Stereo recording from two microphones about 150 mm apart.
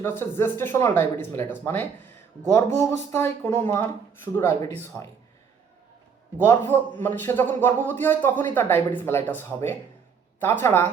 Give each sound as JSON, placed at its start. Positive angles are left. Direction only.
{"t": 0.0, "sound": "speech", "side_deg": 15}
{"t": 6.4, "sound": "speech", "side_deg": 15}